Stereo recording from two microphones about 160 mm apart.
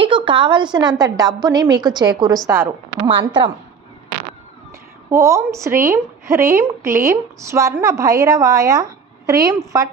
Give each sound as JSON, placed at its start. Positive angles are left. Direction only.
{"t": 0.0, "sound": "a woman's voice", "side_deg": -30}
{"t": 2.5, "sound": "a woman's voice", "side_deg": -15}
{"t": 3.2, "sound": "a woman's voice", "side_deg": -30}
{"t": 5.1, "sound": "a woman's voice", "side_deg": -20}